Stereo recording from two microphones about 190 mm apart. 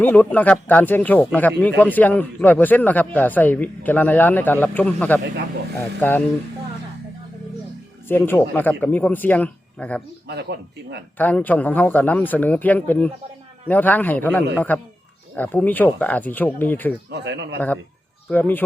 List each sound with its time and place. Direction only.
0.0 s a man's voice: 10° left (ahead or behind)
8.0 s a man's voice: 10° left (ahead or behind)
10.2 s speech: 60° right (ahead or behind)
11.2 s a man's voice: 10° left (ahead or behind)
17.1 s speech: 65° right (ahead or behind)
18.3 s a man's voice: 10° left (ahead or behind)